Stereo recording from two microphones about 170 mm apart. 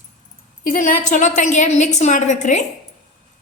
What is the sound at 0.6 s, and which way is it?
A woman's voice, 50° left (ahead or behind).